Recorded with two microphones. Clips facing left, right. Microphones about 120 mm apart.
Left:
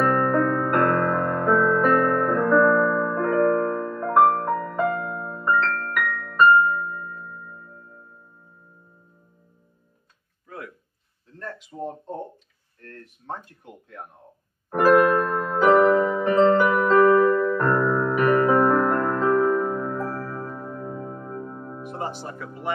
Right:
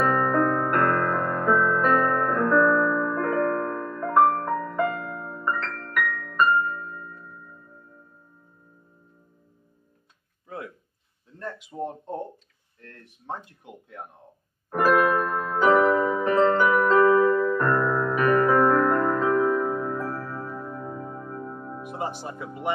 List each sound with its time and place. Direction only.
0.0 s music: centre (ahead or behind)
6.6 s music: 45° left (ahead or behind)
11.7 s a sound: 15° right (ahead or behind)
13.3 s speech: 15° right (ahead or behind)
15.2 s music: centre (ahead or behind); by 18.9 s 20° left (ahead or behind)
19.0 s music: centre (ahead or behind)
20.4 s music: 15° left (ahead or behind)
21.8 s speech: 15° right (ahead or behind)